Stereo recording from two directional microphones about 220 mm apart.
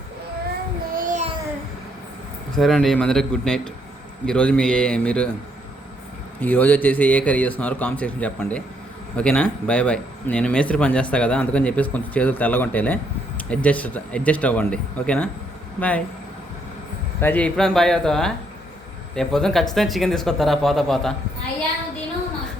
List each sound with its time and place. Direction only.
0.9 s child singing: 35° right (ahead or behind)
2.6 s speech: centre (ahead or behind)
6.4 s a man's voice: 5° left (ahead or behind)
17.2 s speech: 10° left (ahead or behind)